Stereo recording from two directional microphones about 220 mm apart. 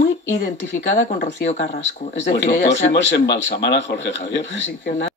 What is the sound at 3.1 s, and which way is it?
Speech, 50° left (ahead or behind).